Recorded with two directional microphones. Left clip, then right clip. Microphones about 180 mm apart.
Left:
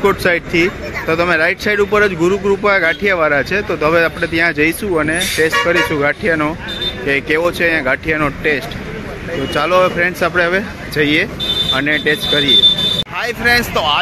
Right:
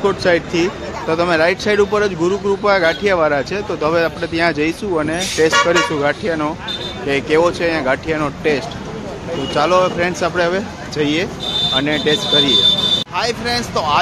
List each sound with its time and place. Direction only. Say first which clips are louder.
0.0 s speech: left 1 dB; 10° right (ahead or behind)